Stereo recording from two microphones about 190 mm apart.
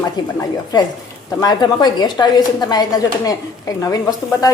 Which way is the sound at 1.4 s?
20° left (ahead or behind).